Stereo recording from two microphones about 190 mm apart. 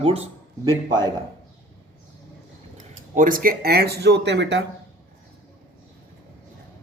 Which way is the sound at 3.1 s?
45° right (ahead or behind).